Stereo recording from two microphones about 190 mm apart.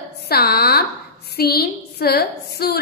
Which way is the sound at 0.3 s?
55° left (ahead or behind).